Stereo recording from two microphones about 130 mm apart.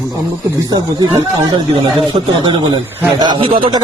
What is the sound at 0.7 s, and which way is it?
Speech, 35° right (ahead or behind).